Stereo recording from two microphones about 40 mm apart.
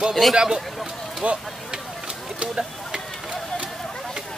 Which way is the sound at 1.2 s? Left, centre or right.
Right.